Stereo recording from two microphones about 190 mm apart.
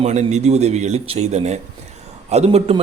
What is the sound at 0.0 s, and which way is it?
A man's voice, 35° right (ahead or behind).